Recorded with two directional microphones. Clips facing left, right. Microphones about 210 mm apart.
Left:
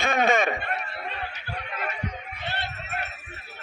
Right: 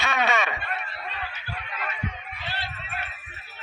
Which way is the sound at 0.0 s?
50° left (ahead or behind).